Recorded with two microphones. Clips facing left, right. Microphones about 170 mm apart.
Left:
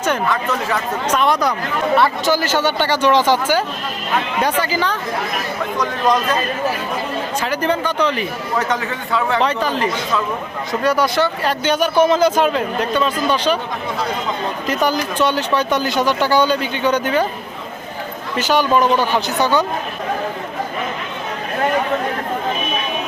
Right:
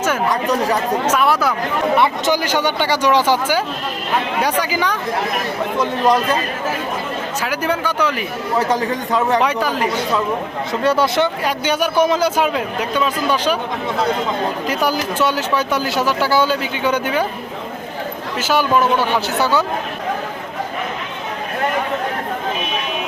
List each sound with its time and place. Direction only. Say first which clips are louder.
0.5 s a man's voice: right 3 dB; 35° right (ahead or behind)
1.0 s speech: left 2 dB; 5° right (ahead or behind)
2.0 s speech: left 2 dB; 20° right (ahead or behind)
4.6 s speech: even; 10° right (ahead or behind)
7.4 s speech: left 1 dB; 10° right (ahead or behind)
8.7 s a man's voice: right 3 dB; 35° right (ahead or behind)
9.4 s speech: even; 10° right (ahead or behind)
10.8 s speech: right 1 dB; 25° right (ahead or behind)
11.4 s speech: left 1 dB; 10° right (ahead or behind)
14.7 s speech: left 4 dB; 10° right (ahead or behind)
18.3 s speech: left 1 dB; 5° right (ahead or behind)